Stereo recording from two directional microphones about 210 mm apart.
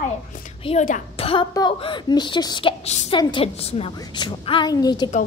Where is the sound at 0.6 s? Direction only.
30° left (ahead or behind).